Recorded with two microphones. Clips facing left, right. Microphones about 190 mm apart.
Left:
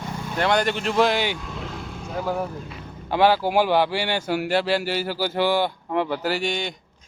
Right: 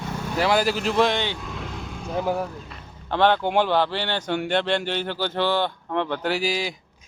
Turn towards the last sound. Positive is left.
turn(degrees=0)  # may be behind; listen again after turning